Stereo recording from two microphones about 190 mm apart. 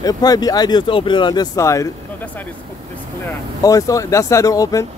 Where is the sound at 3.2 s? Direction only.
20° left (ahead or behind).